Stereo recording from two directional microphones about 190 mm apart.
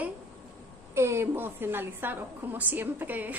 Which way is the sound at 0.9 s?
15° right (ahead or behind).